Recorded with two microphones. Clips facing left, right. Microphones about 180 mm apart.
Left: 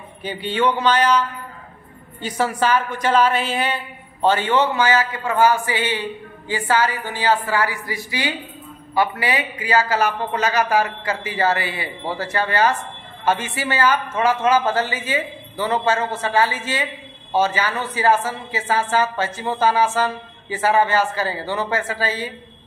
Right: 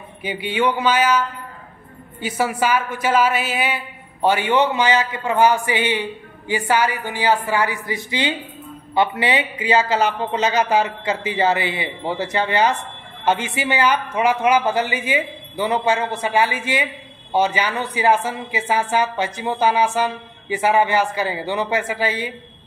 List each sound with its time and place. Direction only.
0.2 s speech: 10° right (ahead or behind)
2.2 s speech: 10° right (ahead or behind)